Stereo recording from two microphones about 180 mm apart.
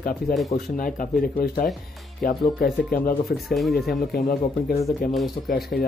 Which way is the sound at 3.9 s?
55° left (ahead or behind).